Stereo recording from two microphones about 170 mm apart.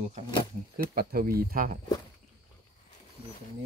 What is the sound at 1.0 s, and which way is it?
Speech, 65° right (ahead or behind).